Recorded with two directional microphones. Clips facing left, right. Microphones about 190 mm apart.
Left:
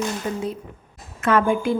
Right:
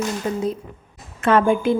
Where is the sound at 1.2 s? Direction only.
25° right (ahead or behind).